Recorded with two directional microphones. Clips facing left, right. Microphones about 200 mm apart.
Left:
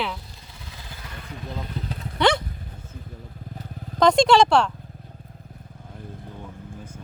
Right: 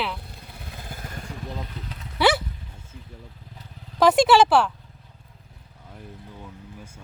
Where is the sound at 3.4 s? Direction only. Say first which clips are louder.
Left 8 dB; 50° left (ahead or behind).